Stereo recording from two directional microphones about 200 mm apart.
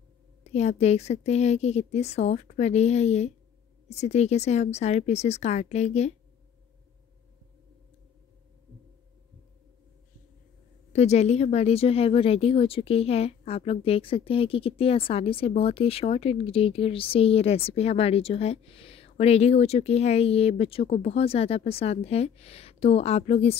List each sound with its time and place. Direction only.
0.4 s speech: 35° left (ahead or behind)
10.9 s speech: 35° left (ahead or behind)